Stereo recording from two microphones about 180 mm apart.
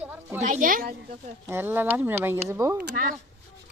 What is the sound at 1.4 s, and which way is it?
Speech, 10° right (ahead or behind).